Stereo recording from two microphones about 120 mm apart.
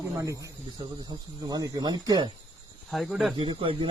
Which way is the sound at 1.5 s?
30° right (ahead or behind).